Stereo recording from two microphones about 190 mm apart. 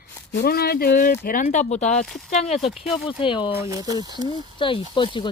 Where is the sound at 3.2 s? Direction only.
30° left (ahead or behind).